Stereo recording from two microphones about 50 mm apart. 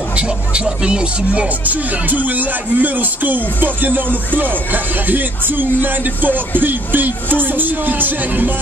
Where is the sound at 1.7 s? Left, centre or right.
Right.